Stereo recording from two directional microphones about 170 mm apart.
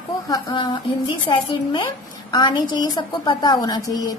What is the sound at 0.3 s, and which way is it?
A woman's voice, 25° left (ahead or behind).